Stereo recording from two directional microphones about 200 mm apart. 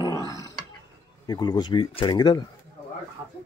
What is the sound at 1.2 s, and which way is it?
Speech, 20° left (ahead or behind).